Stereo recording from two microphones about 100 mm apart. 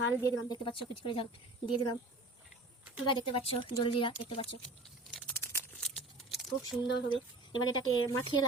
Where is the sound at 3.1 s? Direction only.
65° left (ahead or behind).